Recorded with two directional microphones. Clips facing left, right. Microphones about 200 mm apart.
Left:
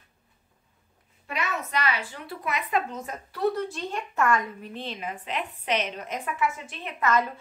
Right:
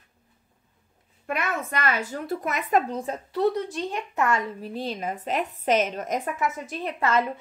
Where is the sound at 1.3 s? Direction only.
50° right (ahead or behind); by 7.2 s 35° right (ahead or behind).